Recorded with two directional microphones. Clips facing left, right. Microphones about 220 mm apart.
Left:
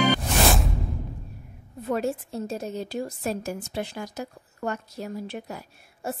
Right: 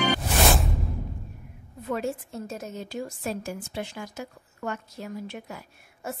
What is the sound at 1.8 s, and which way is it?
Speech, 35° left (ahead or behind).